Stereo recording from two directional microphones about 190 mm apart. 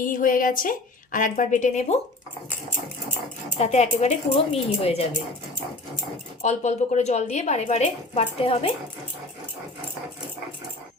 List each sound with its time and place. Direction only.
0.0 s a woman's voice: 45° left (ahead or behind)
3.6 s a woman's voice: 35° left (ahead or behind)
6.4 s a woman's voice: 35° left (ahead or behind)